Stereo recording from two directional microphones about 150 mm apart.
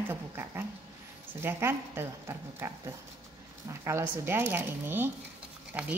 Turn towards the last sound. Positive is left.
turn(degrees=-10)  # may be behind; listen again after turning